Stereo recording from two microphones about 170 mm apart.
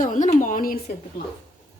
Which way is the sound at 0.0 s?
50° left (ahead or behind).